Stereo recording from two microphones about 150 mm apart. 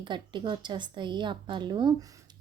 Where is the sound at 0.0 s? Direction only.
30° right (ahead or behind).